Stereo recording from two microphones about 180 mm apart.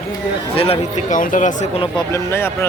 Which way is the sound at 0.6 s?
35° left (ahead or behind).